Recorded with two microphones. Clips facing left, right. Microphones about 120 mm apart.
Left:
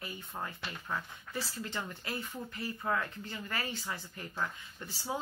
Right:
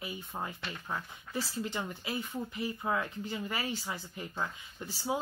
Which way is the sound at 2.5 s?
15° right (ahead or behind).